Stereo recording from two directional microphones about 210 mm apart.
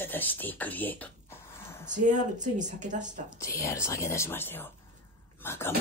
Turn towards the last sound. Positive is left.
turn(degrees=10)  # may be behind; listen again after turning